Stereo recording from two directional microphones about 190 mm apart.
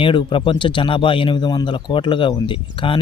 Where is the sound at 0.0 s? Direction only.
25° left (ahead or behind).